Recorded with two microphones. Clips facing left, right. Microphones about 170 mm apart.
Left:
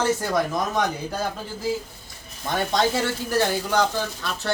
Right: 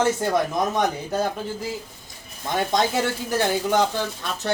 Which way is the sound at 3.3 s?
20° right (ahead or behind).